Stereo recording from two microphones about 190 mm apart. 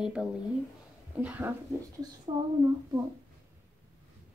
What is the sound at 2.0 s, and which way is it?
Speech, 20° right (ahead or behind).